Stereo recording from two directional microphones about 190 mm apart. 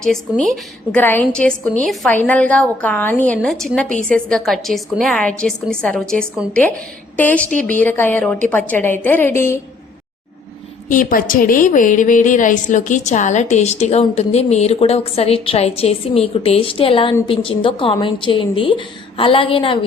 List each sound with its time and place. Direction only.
0.0 s a woman's voice: 5° left (ahead or behind)
10.8 s a woman's voice: 45° left (ahead or behind); by 19.8 s 30° left (ahead or behind)